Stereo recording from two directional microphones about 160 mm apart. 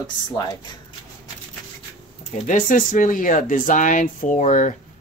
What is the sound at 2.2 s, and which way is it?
Speech, 50° left (ahead or behind).